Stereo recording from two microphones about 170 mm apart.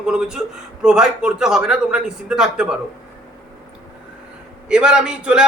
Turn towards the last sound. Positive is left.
turn(degrees=-5)  # may be behind; listen again after turning